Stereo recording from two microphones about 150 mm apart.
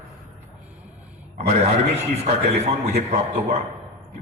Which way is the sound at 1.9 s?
45° right (ahead or behind).